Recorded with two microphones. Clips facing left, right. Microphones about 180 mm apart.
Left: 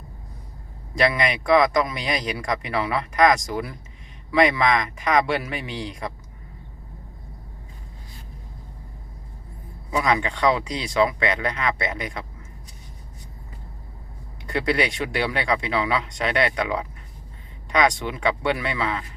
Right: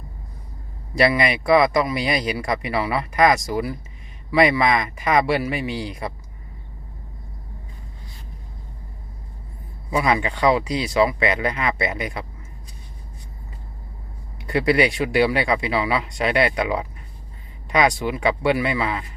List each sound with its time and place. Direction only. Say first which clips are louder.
0.9 s speech: right 3 dB; 5° right (ahead or behind)
9.9 s speech: right 2 dB; 5° right (ahead or behind)
14.4 s speech: right 4 dB; 5° right (ahead or behind)